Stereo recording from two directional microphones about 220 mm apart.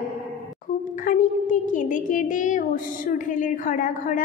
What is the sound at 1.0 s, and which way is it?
A woman's voice, 35° left (ahead or behind).